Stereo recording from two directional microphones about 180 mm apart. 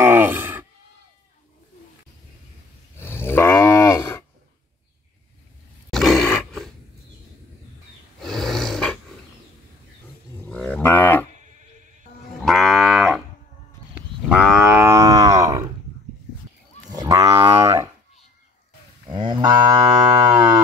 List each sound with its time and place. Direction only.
0.0 s sheep: 10° right (ahead or behind)
3.0 s cattle: 10° left (ahead or behind)
5.9 s grunt: centre (ahead or behind)
8.2 s snoring: centre (ahead or behind)
10.5 s livestock: 5° left (ahead or behind)
12.4 s livestock: centre (ahead or behind)
14.3 s livestock: 10° right (ahead or behind)
16.9 s livestock: 20° right (ahead or behind)
19.1 s cattle: 25° right (ahead or behind)
20.2 s livestock: 25° right (ahead or behind)